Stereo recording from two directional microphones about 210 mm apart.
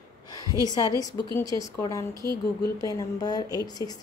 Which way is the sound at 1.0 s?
15° left (ahead or behind).